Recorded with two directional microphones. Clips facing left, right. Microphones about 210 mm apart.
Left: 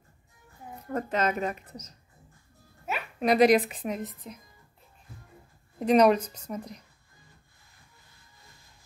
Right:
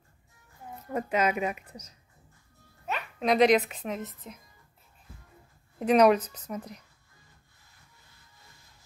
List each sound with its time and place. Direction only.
0.9 s speech: 10° right (ahead or behind)
2.9 s a woman's voice: 5° left (ahead or behind)
5.8 s speech: 5° right (ahead or behind)
6.2 s speech: 10° left (ahead or behind)